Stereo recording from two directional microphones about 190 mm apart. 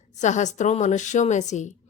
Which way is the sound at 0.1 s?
40° left (ahead or behind).